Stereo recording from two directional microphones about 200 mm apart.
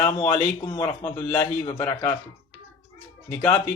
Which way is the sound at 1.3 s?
15° left (ahead or behind).